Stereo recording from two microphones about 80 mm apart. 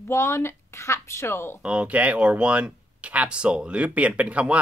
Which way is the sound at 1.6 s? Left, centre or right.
Centre.